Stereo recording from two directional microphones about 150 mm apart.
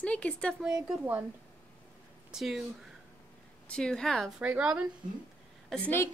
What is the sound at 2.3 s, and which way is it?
Speech, 5° right (ahead or behind).